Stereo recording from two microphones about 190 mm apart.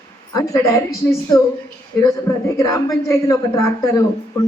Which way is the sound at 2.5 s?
20° left (ahead or behind).